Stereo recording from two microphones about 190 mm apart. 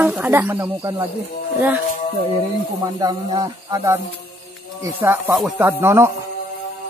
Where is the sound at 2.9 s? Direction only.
20° right (ahead or behind).